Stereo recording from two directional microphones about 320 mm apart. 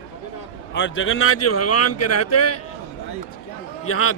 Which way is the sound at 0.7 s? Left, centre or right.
Left.